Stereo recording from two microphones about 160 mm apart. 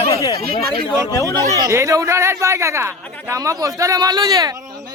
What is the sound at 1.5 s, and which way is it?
Speech, 20° right (ahead or behind).